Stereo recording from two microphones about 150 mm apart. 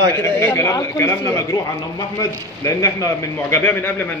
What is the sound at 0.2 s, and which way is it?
A man's voice, 15° left (ahead or behind).